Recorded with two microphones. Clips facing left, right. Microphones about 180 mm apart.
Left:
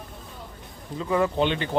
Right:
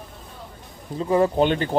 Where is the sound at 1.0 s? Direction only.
35° right (ahead or behind).